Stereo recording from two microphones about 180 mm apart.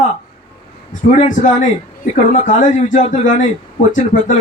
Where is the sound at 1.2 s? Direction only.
45° left (ahead or behind).